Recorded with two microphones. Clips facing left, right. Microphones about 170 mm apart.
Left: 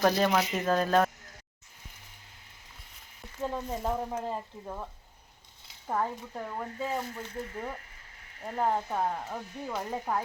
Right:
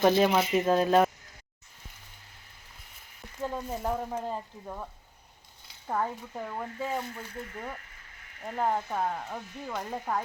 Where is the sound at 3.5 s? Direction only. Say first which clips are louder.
Even; 5° right (ahead or behind).